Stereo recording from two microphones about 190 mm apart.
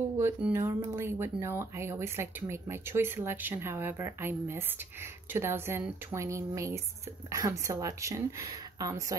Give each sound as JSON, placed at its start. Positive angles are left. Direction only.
{"t": 0.2, "sound": "speech", "side_deg": -10}